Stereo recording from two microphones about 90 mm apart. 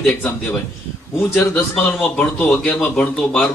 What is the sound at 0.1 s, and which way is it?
Speech, 15° left (ahead or behind).